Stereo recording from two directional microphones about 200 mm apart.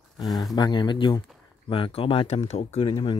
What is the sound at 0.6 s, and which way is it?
Speech, 20° left (ahead or behind).